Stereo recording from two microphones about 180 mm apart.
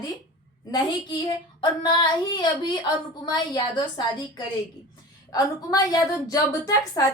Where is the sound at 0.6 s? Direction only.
20° left (ahead or behind).